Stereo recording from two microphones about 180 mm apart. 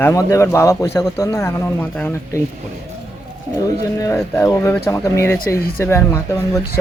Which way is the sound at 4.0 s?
15° left (ahead or behind).